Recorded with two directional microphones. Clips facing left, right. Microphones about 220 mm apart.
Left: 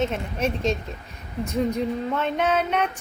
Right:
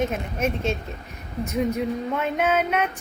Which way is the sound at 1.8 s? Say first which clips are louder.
Even; 10° right (ahead or behind).